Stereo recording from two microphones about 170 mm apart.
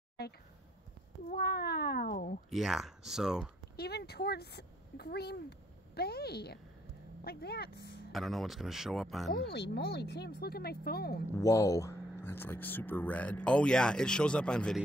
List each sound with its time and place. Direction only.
1.3 s speech: 70° left (ahead or behind)
2.5 s speech: centre (ahead or behind)
3.7 s speech: 70° left (ahead or behind)
8.1 s speech: centre (ahead or behind)
9.5 s speech: 80° left
11.3 s speech: 20° left (ahead or behind)